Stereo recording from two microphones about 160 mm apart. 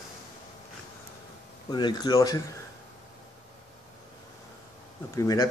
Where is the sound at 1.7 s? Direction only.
25° left (ahead or behind).